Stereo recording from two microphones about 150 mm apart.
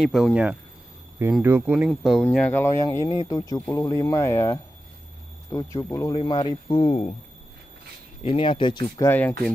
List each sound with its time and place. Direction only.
0.0 s speech: centre (ahead or behind)
1.9 s speech: centre (ahead or behind)
2.2 s speech: 10° left (ahead or behind); by 7.1 s 35° left (ahead or behind)
8.2 s speech: 40° left (ahead or behind)
9.0 s speech: 10° left (ahead or behind)